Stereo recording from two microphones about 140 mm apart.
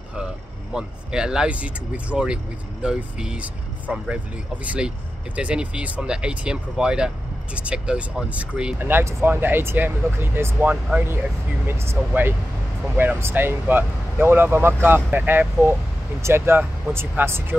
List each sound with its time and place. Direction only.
0.7 s speech: 5° right (ahead or behind)